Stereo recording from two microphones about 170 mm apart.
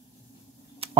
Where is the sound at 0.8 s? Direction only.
35° right (ahead or behind).